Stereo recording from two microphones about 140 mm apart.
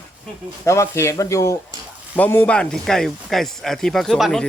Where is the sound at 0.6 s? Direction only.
20° left (ahead or behind).